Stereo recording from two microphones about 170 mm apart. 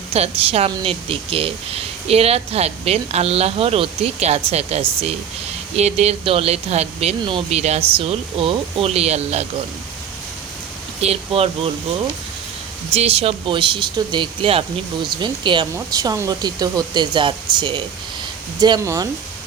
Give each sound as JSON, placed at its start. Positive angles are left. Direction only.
{"t": 0.1, "sound": "speech", "side_deg": -35}
{"t": 7.3, "sound": "speech", "side_deg": -30}
{"t": 11.0, "sound": "speech", "side_deg": -35}
{"t": 12.9, "sound": "speech", "side_deg": -35}